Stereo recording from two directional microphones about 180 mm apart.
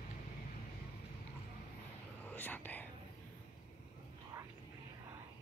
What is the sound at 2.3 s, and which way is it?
Whispering, 10° left (ahead or behind).